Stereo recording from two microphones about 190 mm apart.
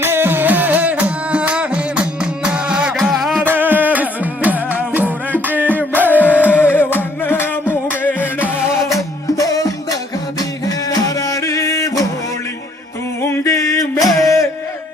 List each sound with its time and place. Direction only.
0.0 s music: 10° right (ahead or behind)
6.1 s music: 10° left (ahead or behind)
13.2 s a sound: 15° left (ahead or behind)
14.2 s music: 15° left (ahead or behind)